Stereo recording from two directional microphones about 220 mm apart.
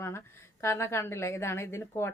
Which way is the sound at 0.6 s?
10° left (ahead or behind).